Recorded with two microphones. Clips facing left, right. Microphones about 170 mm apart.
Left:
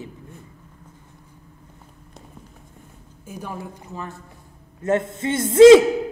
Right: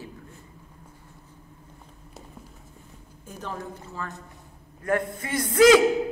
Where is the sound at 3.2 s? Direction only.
10° left (ahead or behind); by 5.8 s 25° left (ahead or behind).